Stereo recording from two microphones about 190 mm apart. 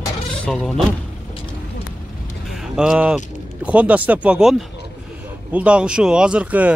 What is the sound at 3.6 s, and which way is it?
A man's voice, 5° right (ahead or behind).